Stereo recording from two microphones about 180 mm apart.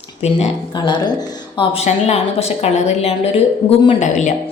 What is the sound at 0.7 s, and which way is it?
A woman's voice, 25° left (ahead or behind).